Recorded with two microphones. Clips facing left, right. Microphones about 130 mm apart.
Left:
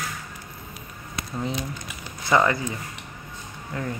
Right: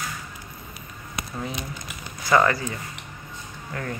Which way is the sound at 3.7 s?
15° left (ahead or behind).